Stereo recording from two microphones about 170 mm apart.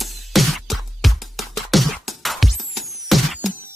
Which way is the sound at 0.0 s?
Centre (ahead or behind).